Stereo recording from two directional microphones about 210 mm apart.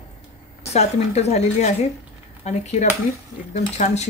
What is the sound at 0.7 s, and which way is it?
Speech, 30° left (ahead or behind).